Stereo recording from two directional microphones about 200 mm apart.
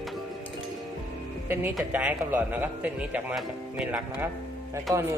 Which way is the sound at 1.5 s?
10° right (ahead or behind).